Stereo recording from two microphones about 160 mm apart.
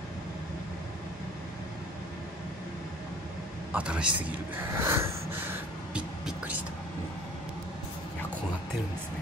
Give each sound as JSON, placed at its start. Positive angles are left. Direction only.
{"t": 3.7, "sound": "a man's voice", "side_deg": -5}
{"t": 4.2, "sound": "gasp", "side_deg": -15}
{"t": 6.2, "sound": "music", "side_deg": -10}